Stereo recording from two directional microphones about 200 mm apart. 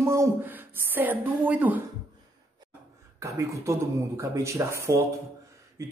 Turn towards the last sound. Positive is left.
turn(degrees=-15)  # may be behind; listen again after turning